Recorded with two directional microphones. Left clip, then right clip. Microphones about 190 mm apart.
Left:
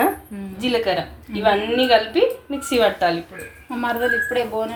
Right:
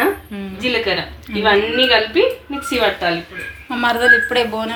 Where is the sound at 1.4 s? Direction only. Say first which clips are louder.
Right 4 dB; 35° left (ahead or behind).